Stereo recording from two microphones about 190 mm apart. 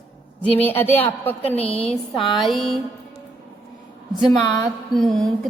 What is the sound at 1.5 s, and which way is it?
Speech, 30° left (ahead or behind).